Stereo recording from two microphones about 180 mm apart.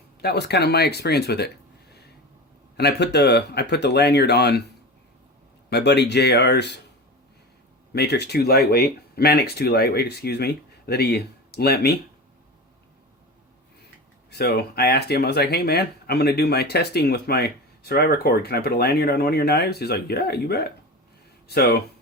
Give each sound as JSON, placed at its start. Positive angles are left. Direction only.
{"t": 0.2, "sound": "speech", "side_deg": 65}
{"t": 2.7, "sound": "speech", "side_deg": 65}
{"t": 5.7, "sound": "speech", "side_deg": 70}
{"t": 7.9, "sound": "speech", "side_deg": 65}
{"t": 14.3, "sound": "speech", "side_deg": 65}